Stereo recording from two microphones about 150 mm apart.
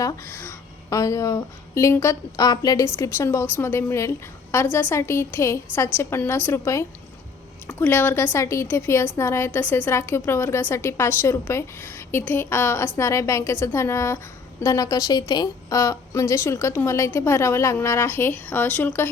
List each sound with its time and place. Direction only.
0.0 s a woman's voice: 20° left (ahead or behind)